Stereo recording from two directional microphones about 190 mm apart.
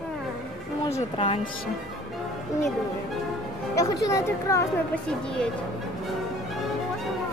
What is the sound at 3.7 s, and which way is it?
Speech, 15° left (ahead or behind).